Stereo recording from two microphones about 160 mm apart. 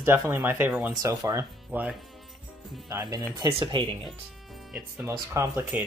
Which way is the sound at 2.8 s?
25° right (ahead or behind).